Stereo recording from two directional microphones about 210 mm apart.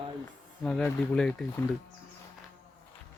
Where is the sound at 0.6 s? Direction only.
5° left (ahead or behind).